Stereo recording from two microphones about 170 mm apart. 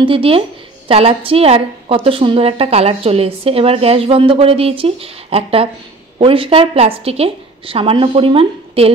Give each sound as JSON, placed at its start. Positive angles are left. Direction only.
{"t": 0.0, "sound": "a woman's voice", "side_deg": -35}